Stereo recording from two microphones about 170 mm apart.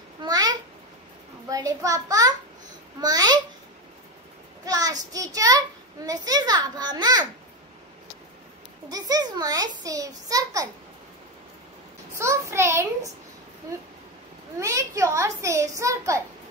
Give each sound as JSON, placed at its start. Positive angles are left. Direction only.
{"t": 0.2, "sound": "babbling", "side_deg": -25}
{"t": 1.5, "sound": "a child's voice", "side_deg": -20}
{"t": 4.6, "sound": "child singing", "side_deg": -20}
{"t": 5.1, "sound": "a child's voice", "side_deg": -20}
{"t": 8.9, "sound": "a child's voice", "side_deg": -20}
{"t": 12.2, "sound": "a child's voice", "side_deg": -15}
{"t": 14.6, "sound": "a child's voice", "side_deg": -15}